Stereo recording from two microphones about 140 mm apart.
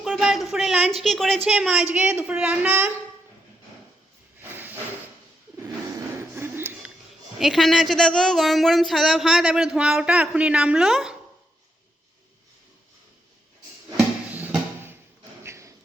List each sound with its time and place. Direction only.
0.0 s a woman's voice: 5° right (ahead or behind)
4.4 s hiss: 15° right (ahead or behind)
6.3 s a sound: 15° right (ahead or behind)
7.3 s speech: centre (ahead or behind)
14.3 s drum: 15° right (ahead or behind)
15.4 s a sound: 20° right (ahead or behind)